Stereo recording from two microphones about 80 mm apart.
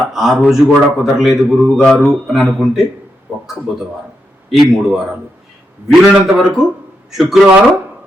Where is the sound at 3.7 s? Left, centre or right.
Centre.